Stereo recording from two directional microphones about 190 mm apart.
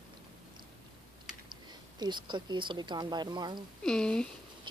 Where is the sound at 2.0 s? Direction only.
25° right (ahead or behind).